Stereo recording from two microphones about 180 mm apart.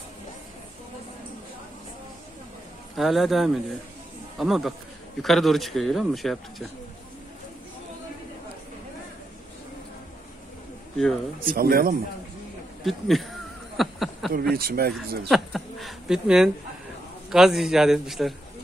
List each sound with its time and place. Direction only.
3.0 s a man's voice: centre (ahead or behind)
11.0 s a man's voice: centre (ahead or behind)
11.5 s speech: 55° right (ahead or behind)
12.8 s a sound: centre (ahead or behind)
14.5 s speech: 55° right (ahead or behind)
15.2 s a man's voice: centre (ahead or behind)